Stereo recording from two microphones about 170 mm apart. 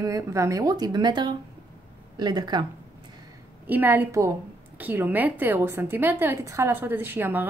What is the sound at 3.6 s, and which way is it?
A woman's voice, 10° right (ahead or behind).